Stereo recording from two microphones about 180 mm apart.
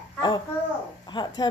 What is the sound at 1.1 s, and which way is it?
Speech, 25° left (ahead or behind).